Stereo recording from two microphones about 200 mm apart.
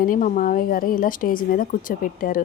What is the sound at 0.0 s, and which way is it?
A woman's voice, 45° left (ahead or behind).